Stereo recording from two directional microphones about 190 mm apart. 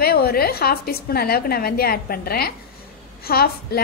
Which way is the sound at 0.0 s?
55° left (ahead or behind).